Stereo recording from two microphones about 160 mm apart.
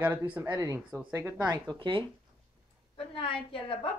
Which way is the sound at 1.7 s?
30° right (ahead or behind).